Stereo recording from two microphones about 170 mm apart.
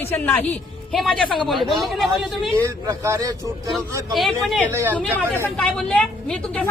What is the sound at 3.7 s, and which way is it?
Speech, centre (ahead or behind).